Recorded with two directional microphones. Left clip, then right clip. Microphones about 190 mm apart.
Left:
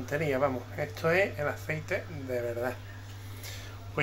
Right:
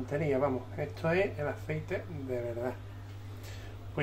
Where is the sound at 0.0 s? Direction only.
5° right (ahead or behind).